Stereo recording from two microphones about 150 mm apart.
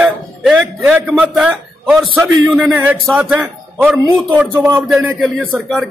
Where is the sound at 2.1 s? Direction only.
15° right (ahead or behind).